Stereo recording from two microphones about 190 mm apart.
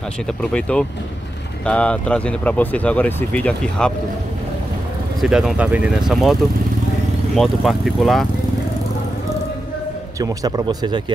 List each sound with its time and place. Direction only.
0.4 s speech: 5° left (ahead or behind)
5.2 s speech: centre (ahead or behind)
7.3 s speech: centre (ahead or behind)
10.1 s speech: 20° right (ahead or behind)